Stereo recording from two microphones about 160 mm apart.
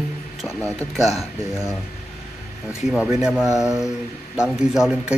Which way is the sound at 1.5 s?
15° left (ahead or behind).